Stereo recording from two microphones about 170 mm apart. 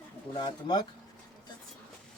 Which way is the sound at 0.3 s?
25° left (ahead or behind).